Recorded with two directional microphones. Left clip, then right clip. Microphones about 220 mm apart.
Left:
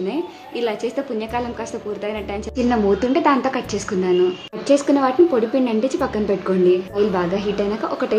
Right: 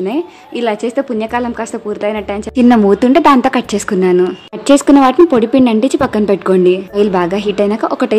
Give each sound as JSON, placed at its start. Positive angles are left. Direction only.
{"t": 0.0, "sound": "a woman's voice", "side_deg": -40}